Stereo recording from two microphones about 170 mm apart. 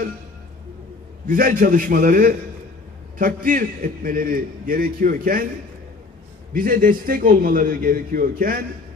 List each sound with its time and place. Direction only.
1.2 s a man's voice: 55° right (ahead or behind)
6.5 s a man's voice: 55° right (ahead or behind)